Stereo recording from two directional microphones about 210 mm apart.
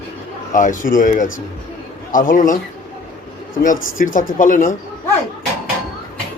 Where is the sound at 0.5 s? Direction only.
40° left (ahead or behind).